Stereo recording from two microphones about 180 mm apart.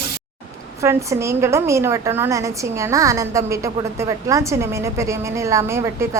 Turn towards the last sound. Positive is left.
turn(degrees=-15)  # may be behind; listen again after turning